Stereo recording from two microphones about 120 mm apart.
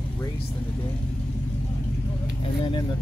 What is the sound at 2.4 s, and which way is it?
Speech, 45° left (ahead or behind).